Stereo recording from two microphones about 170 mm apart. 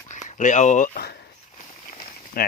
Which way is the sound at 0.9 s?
70° left (ahead or behind).